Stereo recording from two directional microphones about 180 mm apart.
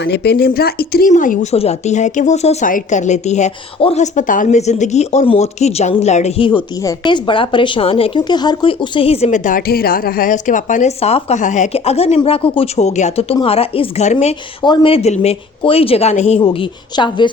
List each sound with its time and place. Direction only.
0.0 s speech: 65° left (ahead or behind)
1.1 s a woman's voice: 45° left (ahead or behind)
14.6 s a woman's voice: 25° left (ahead or behind)